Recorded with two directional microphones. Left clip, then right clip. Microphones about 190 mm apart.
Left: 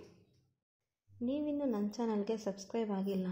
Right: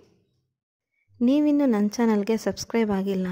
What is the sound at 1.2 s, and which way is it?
A woman's voice, 45° right (ahead or behind).